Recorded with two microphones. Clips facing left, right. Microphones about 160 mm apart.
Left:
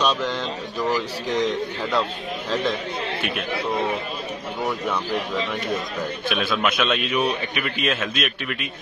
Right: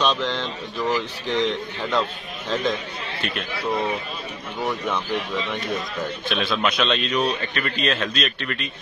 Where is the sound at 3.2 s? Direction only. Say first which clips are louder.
Right 2 dB; centre (ahead or behind).